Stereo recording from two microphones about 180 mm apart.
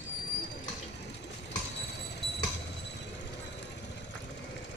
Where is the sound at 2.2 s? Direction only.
70° left (ahead or behind).